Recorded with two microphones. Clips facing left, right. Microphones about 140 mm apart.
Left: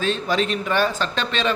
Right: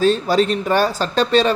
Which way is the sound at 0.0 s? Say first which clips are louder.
Right 6 dB; 40° right (ahead or behind).